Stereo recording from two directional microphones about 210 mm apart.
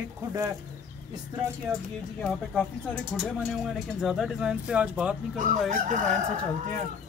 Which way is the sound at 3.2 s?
Centre (ahead or behind).